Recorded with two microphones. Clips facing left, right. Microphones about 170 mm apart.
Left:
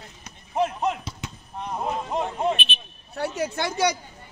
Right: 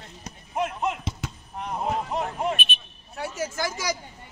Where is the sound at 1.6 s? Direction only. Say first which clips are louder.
Right 1 dB; 25° left (ahead or behind).